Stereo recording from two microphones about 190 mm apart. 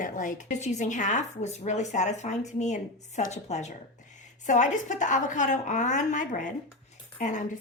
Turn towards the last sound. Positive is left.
turn(degrees=40)  # may be behind; listen again after turning